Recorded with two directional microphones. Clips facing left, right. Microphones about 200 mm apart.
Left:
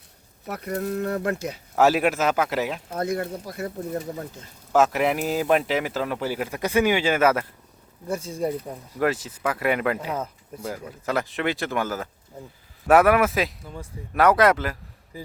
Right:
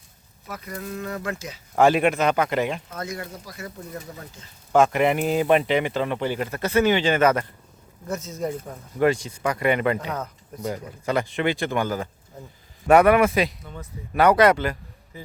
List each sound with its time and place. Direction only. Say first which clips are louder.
0.5 s speech: left 6 dB; 60° left (ahead or behind)
1.7 s speech: right 2 dB; 5° left (ahead or behind)
3.0 s speech: left 6 dB; 60° left (ahead or behind)
4.7 s speech: right 2 dB; 5° left (ahead or behind)
9.0 s speech: right 3 dB; 5° left (ahead or behind)